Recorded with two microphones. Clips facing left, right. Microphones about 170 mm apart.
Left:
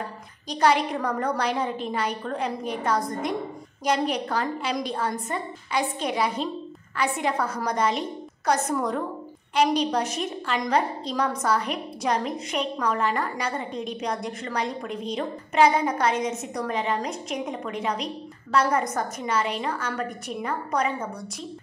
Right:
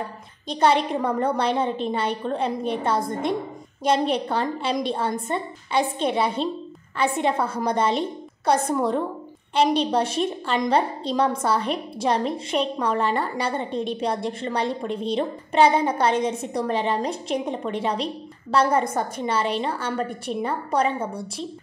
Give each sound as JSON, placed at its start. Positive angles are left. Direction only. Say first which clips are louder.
{"t": 0.5, "sound": "a woman's voice", "louder": "right 2 dB", "side_deg": -25}